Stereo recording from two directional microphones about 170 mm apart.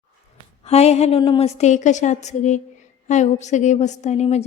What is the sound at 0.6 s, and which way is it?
A woman's voice, 40° left (ahead or behind).